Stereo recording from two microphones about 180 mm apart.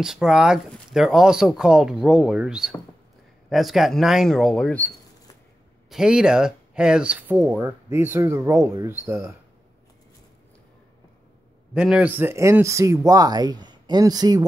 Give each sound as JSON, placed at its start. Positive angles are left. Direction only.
{"t": 0.0, "sound": "speech", "side_deg": -5}
{"t": 5.9, "sound": "speech", "side_deg": -5}
{"t": 11.7, "sound": "speech", "side_deg": -5}